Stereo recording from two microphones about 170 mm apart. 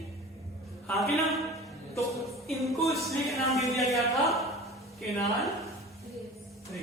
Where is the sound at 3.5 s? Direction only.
Centre (ahead or behind).